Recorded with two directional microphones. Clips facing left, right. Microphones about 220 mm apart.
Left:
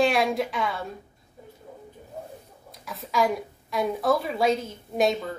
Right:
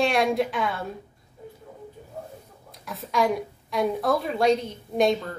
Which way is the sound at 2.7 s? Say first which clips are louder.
Right 1 dB; centre (ahead or behind).